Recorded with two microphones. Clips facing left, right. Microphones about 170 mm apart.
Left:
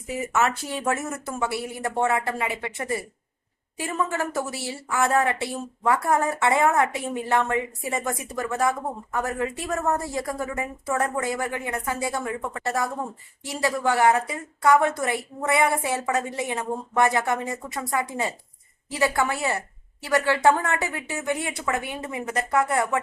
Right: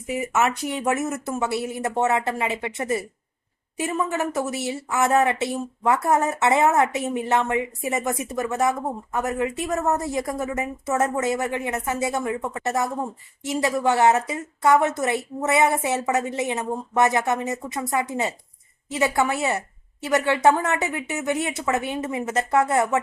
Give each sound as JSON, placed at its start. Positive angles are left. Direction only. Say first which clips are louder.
{"t": 0.1, "sound": "a woman's voice", "louder": "right 2 dB", "side_deg": -20}